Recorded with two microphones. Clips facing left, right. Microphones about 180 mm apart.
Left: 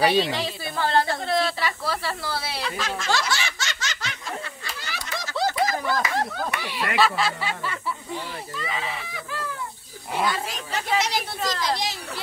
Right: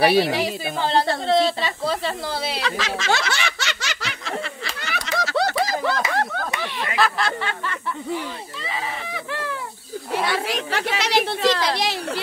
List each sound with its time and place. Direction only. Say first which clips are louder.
0.0 s a woman's voice: right 4 dB; 10° right (ahead or behind)
2.6 s snicker: right 3 dB; 90° right; by 6.4 s 70° right (ahead or behind)
7.0 s snicker: right 1 dB; 5° left (ahead or behind)
9.1 s fowl: right 4 dB; 70° right (ahead or behind)
10.2 s speech: right 1 dB; 70° right (ahead or behind)